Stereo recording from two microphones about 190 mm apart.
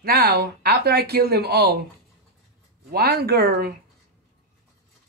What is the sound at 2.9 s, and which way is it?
Speech, 55° right (ahead or behind).